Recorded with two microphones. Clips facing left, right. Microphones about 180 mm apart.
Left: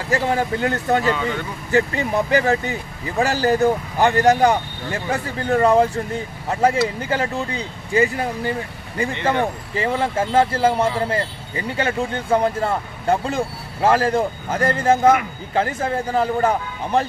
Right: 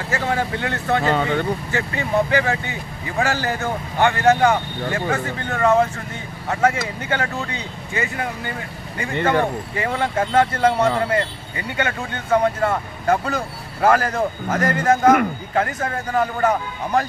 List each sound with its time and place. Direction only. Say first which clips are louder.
0.1 s speech: left 3 dB; 35° left (ahead or behind)
1.0 s speech: right 2 dB; 45° right (ahead or behind)
1.7 s a man's voice: left 4 dB; 40° left (ahead or behind)